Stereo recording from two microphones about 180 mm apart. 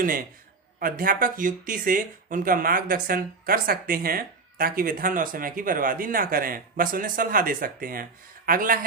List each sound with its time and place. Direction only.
0.8 s speech: 50° right (ahead or behind)